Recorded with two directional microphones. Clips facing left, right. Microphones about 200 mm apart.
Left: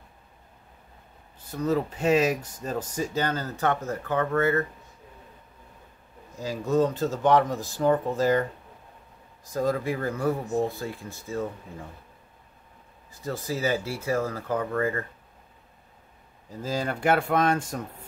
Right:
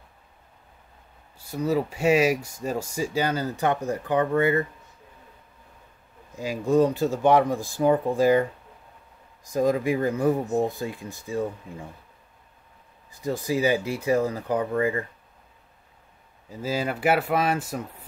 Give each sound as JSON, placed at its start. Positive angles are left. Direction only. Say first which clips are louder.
{"t": 1.4, "sound": "speech", "louder": "right 1 dB", "side_deg": -10}
{"t": 6.3, "sound": "speech", "louder": "right 3 dB", "side_deg": -15}
{"t": 13.1, "sound": "speech", "louder": "right 5 dB", "side_deg": -15}
{"t": 16.4, "sound": "speech", "louder": "right 2 dB", "side_deg": -5}